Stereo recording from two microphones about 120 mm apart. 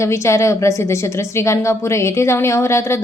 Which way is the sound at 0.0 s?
25° left (ahead or behind).